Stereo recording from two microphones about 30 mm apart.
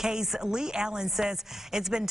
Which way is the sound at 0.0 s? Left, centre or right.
Centre.